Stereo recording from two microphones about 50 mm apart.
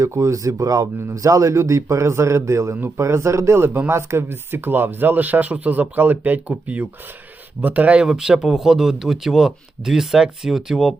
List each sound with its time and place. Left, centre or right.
0.0 s speech: right
8.0 s speech: centre